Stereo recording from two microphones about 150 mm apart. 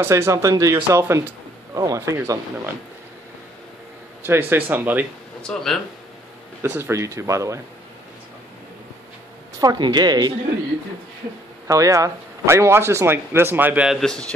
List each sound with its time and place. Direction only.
0.0 s speech: 20° right (ahead or behind)
4.2 s speech: 15° right (ahead or behind)
5.4 s a man's voice: 5° left (ahead or behind)
6.6 s speech: 15° right (ahead or behind)
9.6 s speech: 25° right (ahead or behind)
11.6 s speech: 20° right (ahead or behind)
13.9 s a man's voice: 5° left (ahead or behind)